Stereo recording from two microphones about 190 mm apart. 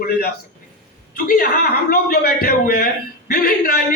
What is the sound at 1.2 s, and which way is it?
Speech, 50° left (ahead or behind).